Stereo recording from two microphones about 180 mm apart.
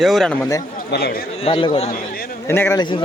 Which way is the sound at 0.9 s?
65° left (ahead or behind).